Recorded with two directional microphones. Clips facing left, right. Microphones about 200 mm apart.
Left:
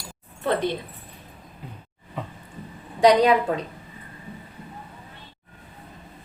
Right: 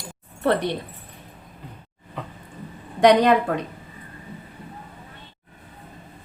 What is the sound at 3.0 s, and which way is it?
Speech, 60° right (ahead or behind).